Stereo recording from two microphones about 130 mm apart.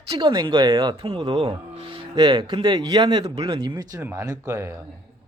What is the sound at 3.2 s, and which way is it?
Speech, 50° right (ahead or behind).